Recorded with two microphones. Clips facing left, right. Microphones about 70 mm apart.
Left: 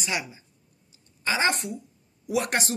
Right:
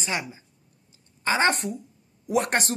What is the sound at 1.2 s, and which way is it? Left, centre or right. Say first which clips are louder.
Speech: right 3 dB; right.